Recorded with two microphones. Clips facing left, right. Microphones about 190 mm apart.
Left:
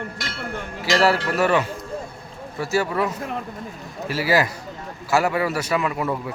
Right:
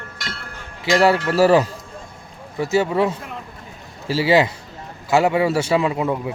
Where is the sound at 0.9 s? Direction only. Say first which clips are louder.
Right 3 dB; 20° right (ahead or behind).